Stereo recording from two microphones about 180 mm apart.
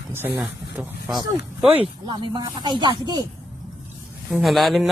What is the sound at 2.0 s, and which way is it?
Speech, 25° right (ahead or behind).